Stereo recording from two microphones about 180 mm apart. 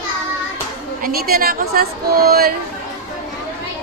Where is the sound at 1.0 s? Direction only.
55° right (ahead or behind).